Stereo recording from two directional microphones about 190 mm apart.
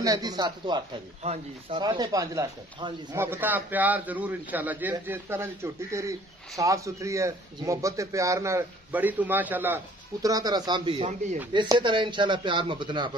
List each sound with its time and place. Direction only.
0.0 s a man's voice: 20° right (ahead or behind)
1.2 s speech: 35° right (ahead or behind)
1.8 s a man's voice: 20° right (ahead or behind)
10.2 s a man's voice: 20° right (ahead or behind)